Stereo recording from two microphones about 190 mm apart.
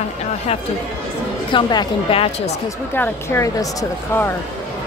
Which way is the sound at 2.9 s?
15° left (ahead or behind).